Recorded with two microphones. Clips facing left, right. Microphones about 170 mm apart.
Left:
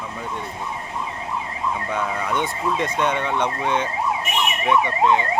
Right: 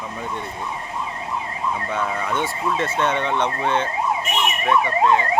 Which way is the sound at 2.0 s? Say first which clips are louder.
Even; 15° left (ahead or behind).